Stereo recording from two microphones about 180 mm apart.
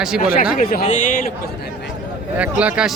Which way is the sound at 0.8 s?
45° left (ahead or behind).